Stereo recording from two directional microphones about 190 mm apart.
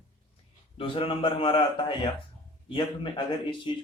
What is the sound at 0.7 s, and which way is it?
Speech, 30° left (ahead or behind).